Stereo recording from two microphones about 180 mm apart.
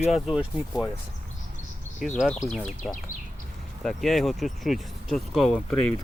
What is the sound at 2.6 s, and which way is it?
Speech, 45° left (ahead or behind).